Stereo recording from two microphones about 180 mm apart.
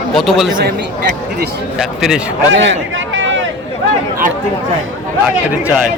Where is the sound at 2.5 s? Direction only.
90° right.